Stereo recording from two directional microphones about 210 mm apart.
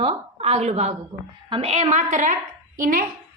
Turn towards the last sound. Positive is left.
turn(degrees=-40)  # may be behind; listen again after turning